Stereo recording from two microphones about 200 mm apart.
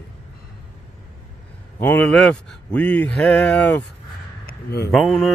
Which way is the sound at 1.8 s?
10° left (ahead or behind).